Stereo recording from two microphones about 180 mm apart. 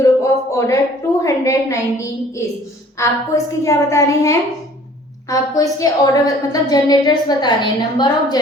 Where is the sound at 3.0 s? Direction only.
15° left (ahead or behind).